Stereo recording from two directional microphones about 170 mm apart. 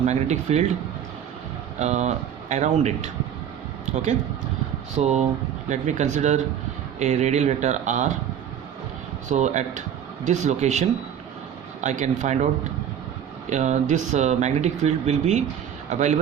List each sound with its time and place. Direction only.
0.0 s speech: 40° right (ahead or behind)
1.8 s speech: 40° right (ahead or behind)
5.0 s speech: 40° right (ahead or behind)
9.3 s speech: 45° right (ahead or behind)
13.5 s speech: 45° right (ahead or behind)